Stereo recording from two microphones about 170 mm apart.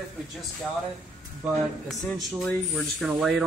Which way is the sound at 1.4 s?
5° right (ahead or behind).